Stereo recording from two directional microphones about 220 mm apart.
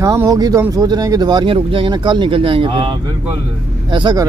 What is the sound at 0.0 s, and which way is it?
Speech, 15° right (ahead or behind).